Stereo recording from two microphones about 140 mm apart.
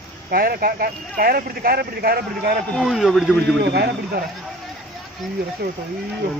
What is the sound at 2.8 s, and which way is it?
Speech, centre (ahead or behind).